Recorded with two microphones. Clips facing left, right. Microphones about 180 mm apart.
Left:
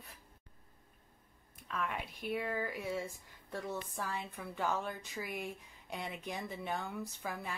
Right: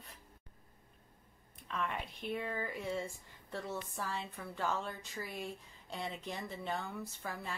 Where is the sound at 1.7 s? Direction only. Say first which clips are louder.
Even; 5° left (ahead or behind).